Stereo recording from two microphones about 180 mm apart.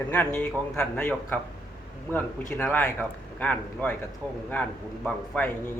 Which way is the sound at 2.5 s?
10° left (ahead or behind).